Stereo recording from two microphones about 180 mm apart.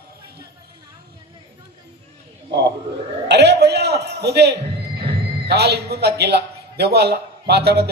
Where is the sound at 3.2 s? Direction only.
70° right (ahead or behind).